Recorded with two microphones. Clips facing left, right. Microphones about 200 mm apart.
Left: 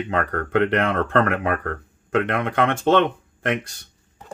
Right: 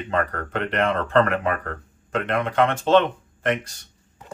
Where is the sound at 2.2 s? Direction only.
60° left (ahead or behind).